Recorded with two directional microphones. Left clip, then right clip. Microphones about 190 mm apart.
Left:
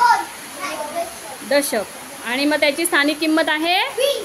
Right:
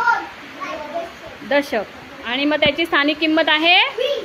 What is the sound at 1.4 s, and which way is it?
Speech, 10° left (ahead or behind).